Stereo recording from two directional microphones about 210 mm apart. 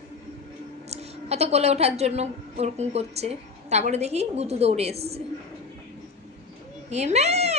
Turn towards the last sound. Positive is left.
turn(degrees=-30)  # may be behind; listen again after turning